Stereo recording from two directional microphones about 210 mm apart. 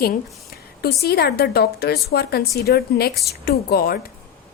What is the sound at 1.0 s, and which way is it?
A woman's voice, 50° left (ahead or behind).